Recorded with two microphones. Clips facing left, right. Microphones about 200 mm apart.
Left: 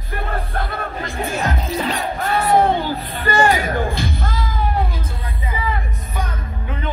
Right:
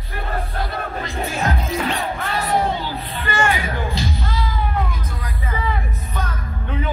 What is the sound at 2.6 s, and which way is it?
Music, 55° left (ahead or behind).